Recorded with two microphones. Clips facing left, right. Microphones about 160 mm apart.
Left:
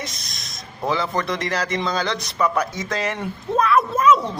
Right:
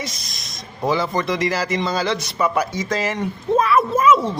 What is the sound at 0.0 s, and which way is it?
A man's voice, centre (ahead or behind).